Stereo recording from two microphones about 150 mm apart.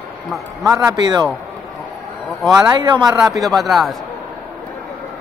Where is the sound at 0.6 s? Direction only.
20° right (ahead or behind).